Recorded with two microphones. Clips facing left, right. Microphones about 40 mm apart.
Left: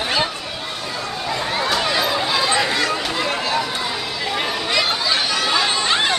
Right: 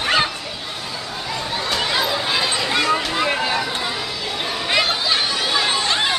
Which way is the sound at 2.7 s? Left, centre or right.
Centre.